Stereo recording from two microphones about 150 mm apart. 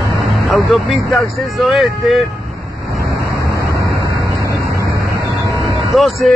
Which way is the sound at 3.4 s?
20° left (ahead or behind).